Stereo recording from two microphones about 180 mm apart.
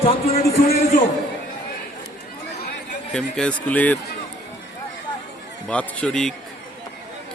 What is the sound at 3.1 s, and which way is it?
Speech, 5° left (ahead or behind).